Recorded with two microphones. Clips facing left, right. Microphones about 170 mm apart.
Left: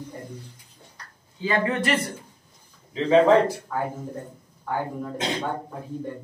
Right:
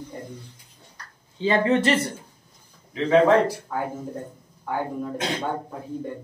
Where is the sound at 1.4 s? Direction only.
25° right (ahead or behind).